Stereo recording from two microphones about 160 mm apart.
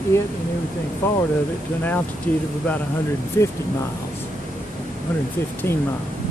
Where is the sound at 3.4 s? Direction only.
15° left (ahead or behind).